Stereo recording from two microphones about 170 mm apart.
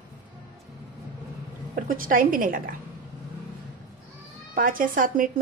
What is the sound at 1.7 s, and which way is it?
A woman's voice, 55° right (ahead or behind).